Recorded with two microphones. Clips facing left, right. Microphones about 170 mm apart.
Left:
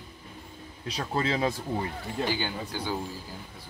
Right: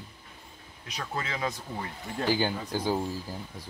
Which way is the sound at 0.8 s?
35° left (ahead or behind).